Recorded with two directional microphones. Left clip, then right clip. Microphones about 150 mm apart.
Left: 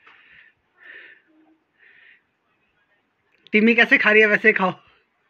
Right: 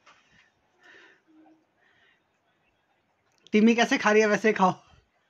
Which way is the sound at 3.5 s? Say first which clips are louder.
Left 7 dB; 25° right (ahead or behind).